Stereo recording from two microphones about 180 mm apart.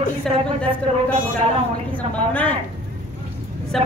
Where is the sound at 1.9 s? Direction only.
10° left (ahead or behind).